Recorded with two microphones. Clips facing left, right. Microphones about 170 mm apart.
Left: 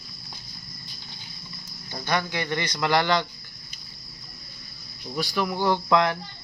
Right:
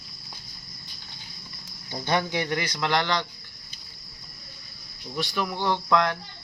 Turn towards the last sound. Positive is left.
turn(degrees=10)  # may be behind; listen again after turning